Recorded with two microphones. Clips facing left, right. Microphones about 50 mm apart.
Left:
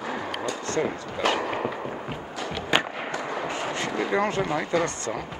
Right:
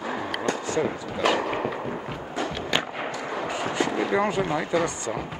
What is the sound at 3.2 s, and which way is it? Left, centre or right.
Gunshot, centre.